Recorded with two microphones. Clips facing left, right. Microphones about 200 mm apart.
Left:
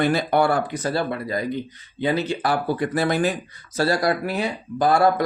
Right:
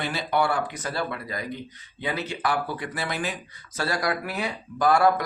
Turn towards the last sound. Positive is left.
turn(degrees=30)  # may be behind; listen again after turning